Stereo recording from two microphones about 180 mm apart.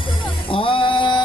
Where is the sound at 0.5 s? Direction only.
30° left (ahead or behind).